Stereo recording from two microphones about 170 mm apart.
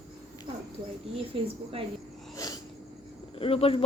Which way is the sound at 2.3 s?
20° left (ahead or behind).